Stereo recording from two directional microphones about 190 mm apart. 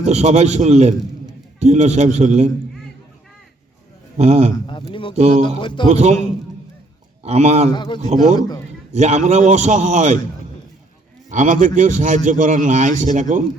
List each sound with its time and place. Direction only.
0.0 s a man's voice: 35° right (ahead or behind)
4.2 s a man's voice: 35° right (ahead or behind)
4.6 s speech: 25° left (ahead or behind)
5.9 s a man's voice: 35° right (ahead or behind)
7.2 s a man's voice: 35° right (ahead or behind)
7.7 s speech: 25° left (ahead or behind)
8.9 s a man's voice: 35° right (ahead or behind)
11.3 s a man's voice: 40° right (ahead or behind)